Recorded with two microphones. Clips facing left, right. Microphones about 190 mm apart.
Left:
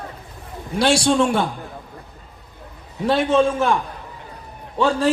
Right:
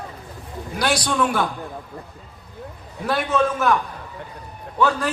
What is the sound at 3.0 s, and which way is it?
Speech, 25° left (ahead or behind).